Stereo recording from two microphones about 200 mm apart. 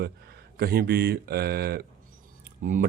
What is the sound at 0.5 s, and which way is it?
A man's voice, 50° right (ahead or behind).